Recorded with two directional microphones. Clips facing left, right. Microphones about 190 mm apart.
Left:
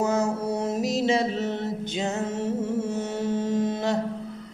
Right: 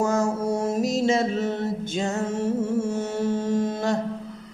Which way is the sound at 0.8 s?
45° right (ahead or behind).